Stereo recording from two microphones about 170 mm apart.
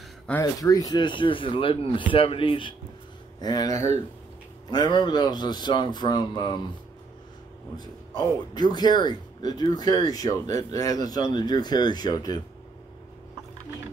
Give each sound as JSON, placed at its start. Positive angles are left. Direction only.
{"t": 0.4, "sound": "a man's voice", "side_deg": 20}
{"t": 7.8, "sound": "a man's voice", "side_deg": 25}